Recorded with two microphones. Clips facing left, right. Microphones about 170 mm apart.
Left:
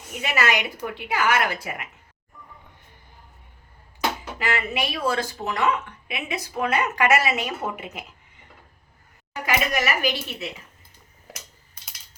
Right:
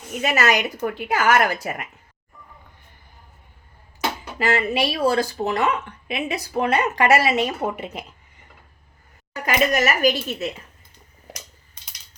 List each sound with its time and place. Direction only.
0.2 s a woman's voice: 45° right (ahead or behind)
4.4 s speech: 40° right (ahead or behind)
9.3 s a woman's voice: 45° right (ahead or behind)